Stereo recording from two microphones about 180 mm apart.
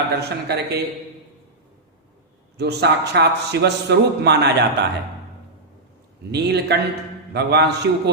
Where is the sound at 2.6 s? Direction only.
65° right (ahead or behind).